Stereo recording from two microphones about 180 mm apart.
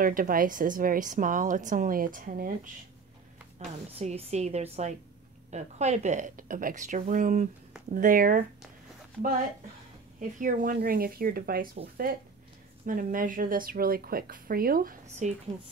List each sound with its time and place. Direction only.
0.0 s a woman's voice: 50° right (ahead or behind)
3.5 s a woman's voice: 40° right (ahead or behind)
10.4 s a woman's voice: 50° right (ahead or behind)